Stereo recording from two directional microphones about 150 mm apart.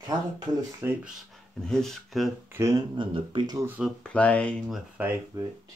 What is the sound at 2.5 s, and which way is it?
Speech, 20° right (ahead or behind).